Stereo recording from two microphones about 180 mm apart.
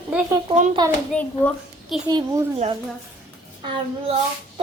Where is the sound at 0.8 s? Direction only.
25° right (ahead or behind).